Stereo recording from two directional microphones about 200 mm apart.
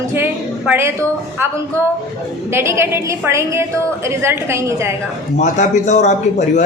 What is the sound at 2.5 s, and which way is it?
A woman's voice, 15° right (ahead or behind).